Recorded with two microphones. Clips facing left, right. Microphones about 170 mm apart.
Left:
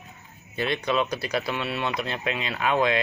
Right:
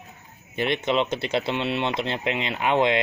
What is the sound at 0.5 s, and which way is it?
Speech, 20° right (ahead or behind).